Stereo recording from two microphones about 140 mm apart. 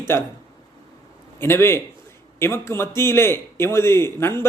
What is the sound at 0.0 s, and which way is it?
Speech, 15° left (ahead or behind).